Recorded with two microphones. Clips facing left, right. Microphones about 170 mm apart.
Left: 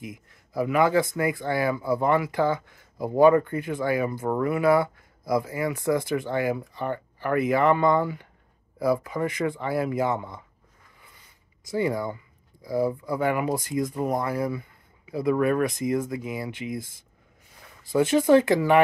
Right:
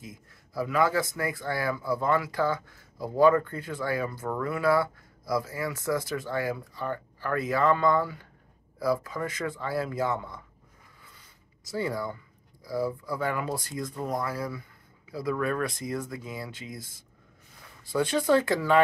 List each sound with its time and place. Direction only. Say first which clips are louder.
0.0 s speech: left 6 dB; 15° left (ahead or behind)
11.7 s speech: left 5 dB; 15° left (ahead or behind)
17.9 s speech: left 5 dB; 10° left (ahead or behind)